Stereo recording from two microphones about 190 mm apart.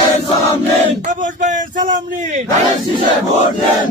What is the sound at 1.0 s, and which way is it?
Speech, 40° right (ahead or behind).